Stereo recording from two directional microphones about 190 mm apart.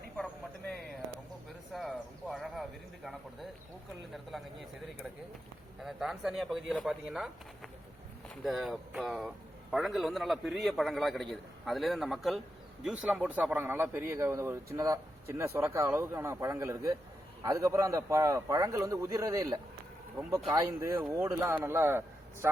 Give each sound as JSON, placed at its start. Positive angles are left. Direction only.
{"t": 1.7, "sound": "a sound", "side_deg": 0}
{"t": 4.1, "sound": "a man's voice", "side_deg": 0}
{"t": 5.8, "sound": "a man's voice", "side_deg": 0}
{"t": 8.4, "sound": "a man's voice", "side_deg": 0}